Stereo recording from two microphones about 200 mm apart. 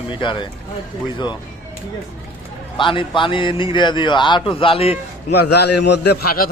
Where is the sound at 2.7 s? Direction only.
25° left (ahead or behind).